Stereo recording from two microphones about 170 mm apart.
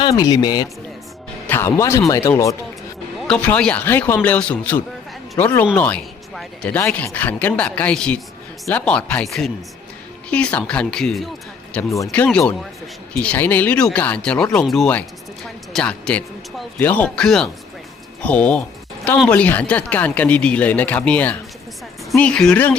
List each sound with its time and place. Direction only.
0.0 s speech: 25° left (ahead or behind); by 11.3 s centre (ahead or behind)
11.7 s speech: 15° left (ahead or behind)